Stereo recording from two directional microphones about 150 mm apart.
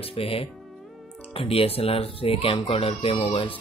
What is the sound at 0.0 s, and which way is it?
A child's voice, 40° left (ahead or behind).